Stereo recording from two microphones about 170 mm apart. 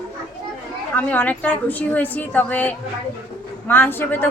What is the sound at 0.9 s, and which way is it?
A woman's voice, 10° left (ahead or behind).